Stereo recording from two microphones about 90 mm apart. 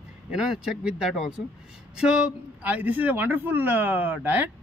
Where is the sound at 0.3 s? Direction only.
5° right (ahead or behind).